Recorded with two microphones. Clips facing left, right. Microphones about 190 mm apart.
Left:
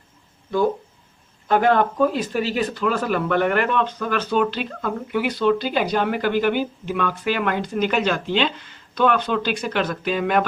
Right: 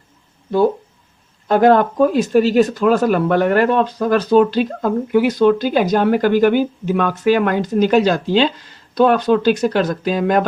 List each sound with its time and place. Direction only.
1.5 s speech: 40° right (ahead or behind)